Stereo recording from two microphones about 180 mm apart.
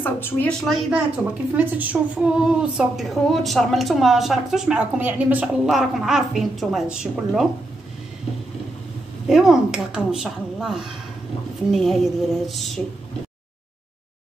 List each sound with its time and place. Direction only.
0.0 s a woman's voice: 10° left (ahead or behind)
9.3 s a woman's voice: centre (ahead or behind)